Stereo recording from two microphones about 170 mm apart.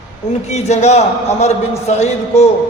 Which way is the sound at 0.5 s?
40° left (ahead or behind).